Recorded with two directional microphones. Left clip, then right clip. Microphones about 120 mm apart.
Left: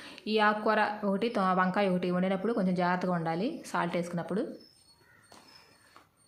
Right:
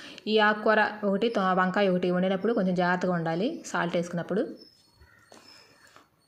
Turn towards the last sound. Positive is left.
turn(degrees=-20)  # may be behind; listen again after turning